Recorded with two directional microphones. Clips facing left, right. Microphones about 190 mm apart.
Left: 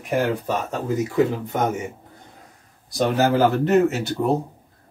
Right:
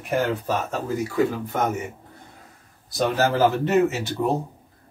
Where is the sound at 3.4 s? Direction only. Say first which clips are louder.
Left 2 dB; centre (ahead or behind).